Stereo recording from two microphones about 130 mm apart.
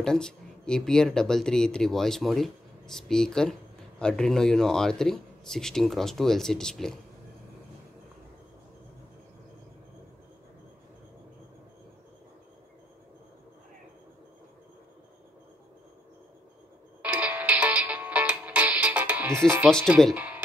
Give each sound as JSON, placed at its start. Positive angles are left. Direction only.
{"t": 0.0, "sound": "speech", "side_deg": 5}
{"t": 17.0, "sound": "music", "side_deg": -10}